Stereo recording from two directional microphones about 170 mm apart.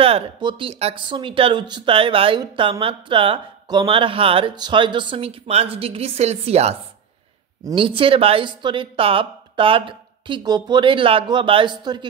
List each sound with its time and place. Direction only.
0.0 s speech: 30° right (ahead or behind)